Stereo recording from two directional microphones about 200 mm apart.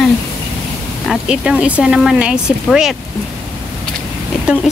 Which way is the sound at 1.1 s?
5° right (ahead or behind).